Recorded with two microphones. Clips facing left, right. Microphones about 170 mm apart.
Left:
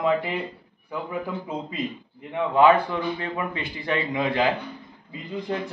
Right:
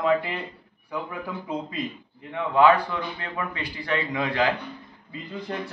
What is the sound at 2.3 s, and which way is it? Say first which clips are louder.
A man's voice: left 1 dB; 20° left (ahead or behind).